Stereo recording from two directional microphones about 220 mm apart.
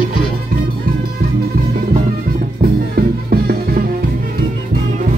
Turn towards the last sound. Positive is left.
turn(degrees=-45)  # may be behind; listen again after turning